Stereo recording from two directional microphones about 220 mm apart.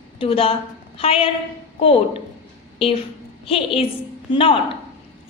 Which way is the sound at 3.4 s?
25° left (ahead or behind).